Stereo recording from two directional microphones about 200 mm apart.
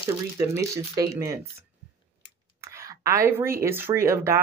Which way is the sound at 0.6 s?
15° right (ahead or behind).